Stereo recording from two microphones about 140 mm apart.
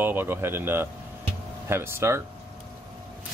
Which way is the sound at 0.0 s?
15° right (ahead or behind).